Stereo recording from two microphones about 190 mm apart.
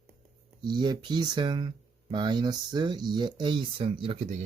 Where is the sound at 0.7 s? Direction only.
25° right (ahead or behind).